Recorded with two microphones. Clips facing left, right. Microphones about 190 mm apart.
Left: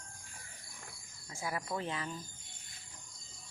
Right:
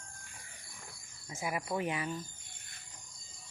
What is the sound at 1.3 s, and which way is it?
Speech, 15° right (ahead or behind).